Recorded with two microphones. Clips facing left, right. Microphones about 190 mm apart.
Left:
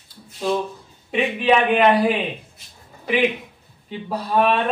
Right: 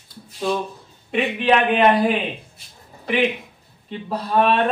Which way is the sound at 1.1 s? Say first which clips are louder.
Even; 5° left (ahead or behind).